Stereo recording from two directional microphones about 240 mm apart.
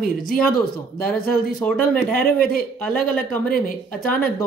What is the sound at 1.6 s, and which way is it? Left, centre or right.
Speech, centre.